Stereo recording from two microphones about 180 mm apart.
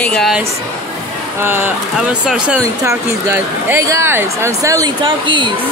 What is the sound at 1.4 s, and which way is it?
Speech, 10° right (ahead or behind).